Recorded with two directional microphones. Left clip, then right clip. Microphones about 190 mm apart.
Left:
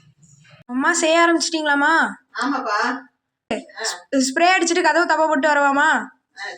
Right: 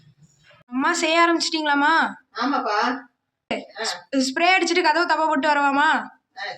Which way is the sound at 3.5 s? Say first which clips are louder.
Left 1 dB; 25° left (ahead or behind).